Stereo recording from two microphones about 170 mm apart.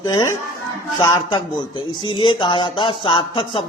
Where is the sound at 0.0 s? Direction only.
25° left (ahead or behind).